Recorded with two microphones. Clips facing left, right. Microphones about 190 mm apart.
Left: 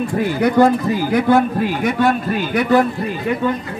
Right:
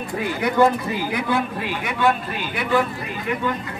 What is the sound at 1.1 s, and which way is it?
A man's voice, 45° left (ahead or behind).